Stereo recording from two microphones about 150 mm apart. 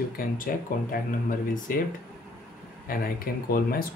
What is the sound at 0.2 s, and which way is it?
Speech, 70° left (ahead or behind).